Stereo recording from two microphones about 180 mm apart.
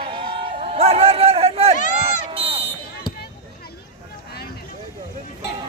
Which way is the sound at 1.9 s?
35° right (ahead or behind).